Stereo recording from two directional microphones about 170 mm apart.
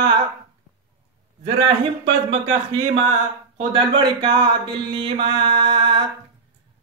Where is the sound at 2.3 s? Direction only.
30° right (ahead or behind).